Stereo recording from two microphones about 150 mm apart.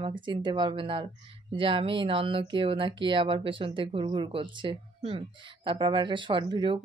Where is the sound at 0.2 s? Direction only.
30° right (ahead or behind).